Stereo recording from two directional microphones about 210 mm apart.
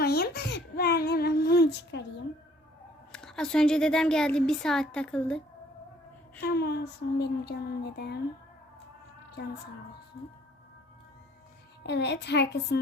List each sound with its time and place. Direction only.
0.0 s child singing: 50° left (ahead or behind)
3.1 s speech: 5° left (ahead or behind)
6.4 s speech: 50° left (ahead or behind)
11.8 s speech: 55° left (ahead or behind)